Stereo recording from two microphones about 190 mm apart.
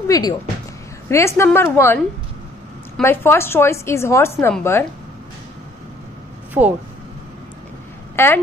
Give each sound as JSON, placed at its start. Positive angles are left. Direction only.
{"t": 0.1, "sound": "a woman's voice", "side_deg": 20}
{"t": 3.0, "sound": "a woman's voice", "side_deg": 15}
{"t": 6.6, "sound": "speech", "side_deg": -10}
{"t": 8.2, "sound": "a woman's voice", "side_deg": 10}